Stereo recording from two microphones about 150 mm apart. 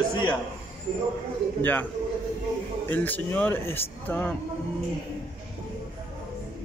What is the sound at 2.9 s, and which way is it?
Speech, 10° left (ahead or behind).